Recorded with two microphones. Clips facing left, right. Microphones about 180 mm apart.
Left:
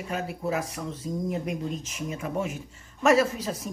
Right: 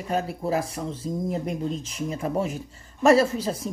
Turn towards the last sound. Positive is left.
turn(degrees=-30)  # may be behind; listen again after turning